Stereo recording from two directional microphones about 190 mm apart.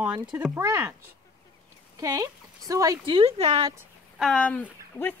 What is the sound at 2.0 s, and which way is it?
Speech, 15° right (ahead or behind).